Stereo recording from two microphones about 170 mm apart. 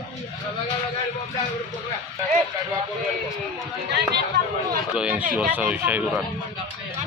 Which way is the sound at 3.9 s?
80° right.